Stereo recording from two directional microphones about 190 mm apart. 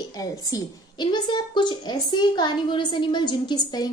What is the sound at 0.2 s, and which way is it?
A woman's voice, 20° left (ahead or behind).